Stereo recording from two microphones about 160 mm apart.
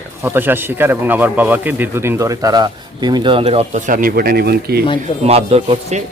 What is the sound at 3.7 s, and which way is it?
Speech, 55° right (ahead or behind).